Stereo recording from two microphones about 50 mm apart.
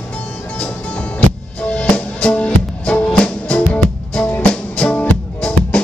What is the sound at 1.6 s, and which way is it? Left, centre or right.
Music, left.